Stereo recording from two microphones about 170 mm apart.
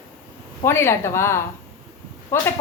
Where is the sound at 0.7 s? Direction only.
15° left (ahead or behind).